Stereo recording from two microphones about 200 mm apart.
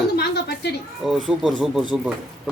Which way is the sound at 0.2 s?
55° left (ahead or behind).